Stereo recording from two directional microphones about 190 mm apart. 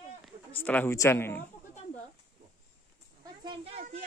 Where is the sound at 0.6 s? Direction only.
10° left (ahead or behind).